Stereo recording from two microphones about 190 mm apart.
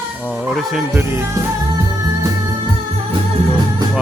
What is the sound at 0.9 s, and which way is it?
Music, 10° right (ahead or behind).